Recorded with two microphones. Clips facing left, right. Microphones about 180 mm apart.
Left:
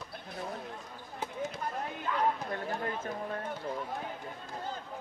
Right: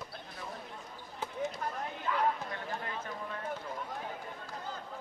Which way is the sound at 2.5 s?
45° left (ahead or behind).